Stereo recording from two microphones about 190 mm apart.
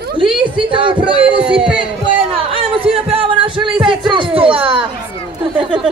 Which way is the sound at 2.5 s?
30° right (ahead or behind).